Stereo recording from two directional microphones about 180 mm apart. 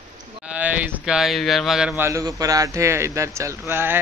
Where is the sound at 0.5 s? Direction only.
10° right (ahead or behind).